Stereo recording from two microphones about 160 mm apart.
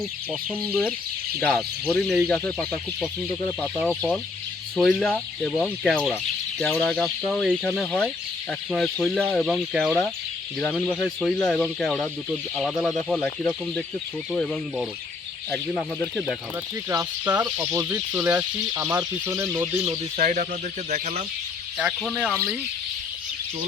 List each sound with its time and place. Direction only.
1.4 s speech: 10° left (ahead or behind)
3.8 s speech: centre (ahead or behind)
17.4 s speech: 10° right (ahead or behind)
20.1 s speech: 50° right (ahead or behind)
22.1 s speech: centre (ahead or behind)